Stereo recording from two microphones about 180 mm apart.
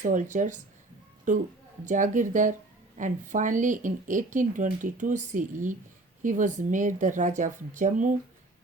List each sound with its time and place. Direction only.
0.0 s speech: 45° right (ahead or behind)